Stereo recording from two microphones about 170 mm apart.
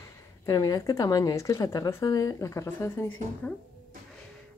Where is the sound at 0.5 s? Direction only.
20° left (ahead or behind).